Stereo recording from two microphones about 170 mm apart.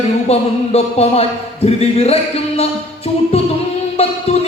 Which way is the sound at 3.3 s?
35° left (ahead or behind).